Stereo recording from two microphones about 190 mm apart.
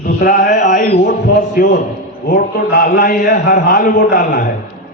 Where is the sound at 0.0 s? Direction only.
45° left (ahead or behind).